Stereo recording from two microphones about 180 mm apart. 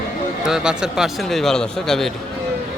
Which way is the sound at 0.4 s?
5° right (ahead or behind).